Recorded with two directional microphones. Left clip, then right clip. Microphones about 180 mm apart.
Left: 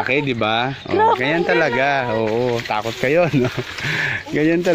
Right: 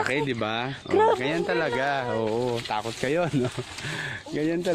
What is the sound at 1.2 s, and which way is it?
Speech, 5° left (ahead or behind).